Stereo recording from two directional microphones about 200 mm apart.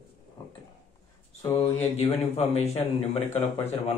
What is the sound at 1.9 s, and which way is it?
A man's voice, 30° left (ahead or behind).